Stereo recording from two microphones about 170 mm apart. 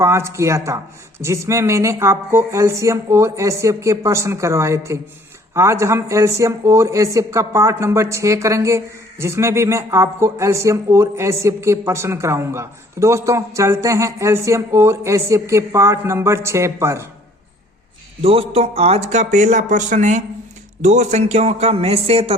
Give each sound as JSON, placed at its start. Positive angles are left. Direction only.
{"t": 0.0, "sound": "speech", "side_deg": -15}
{"t": 18.2, "sound": "a man's voice", "side_deg": -35}